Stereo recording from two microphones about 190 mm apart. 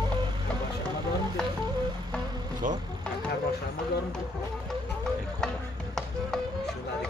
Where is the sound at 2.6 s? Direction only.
40° right (ahead or behind).